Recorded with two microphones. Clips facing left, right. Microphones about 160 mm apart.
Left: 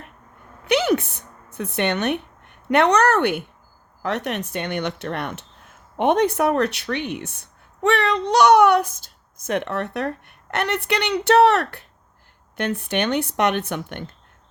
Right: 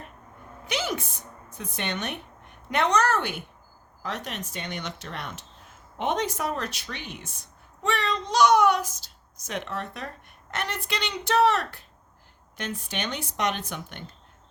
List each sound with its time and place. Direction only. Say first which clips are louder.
0.7 s speech: left 11 dB; 65° left (ahead or behind)